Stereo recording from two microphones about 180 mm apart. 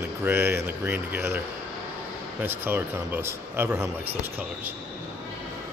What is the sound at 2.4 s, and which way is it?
Speech, 10° right (ahead or behind).